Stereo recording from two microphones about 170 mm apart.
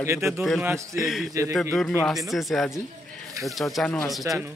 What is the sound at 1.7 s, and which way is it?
A man's voice, centre (ahead or behind).